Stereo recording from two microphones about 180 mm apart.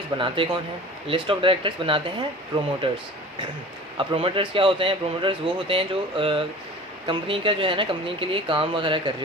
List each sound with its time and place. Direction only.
0.2 s speech: 30° right (ahead or behind)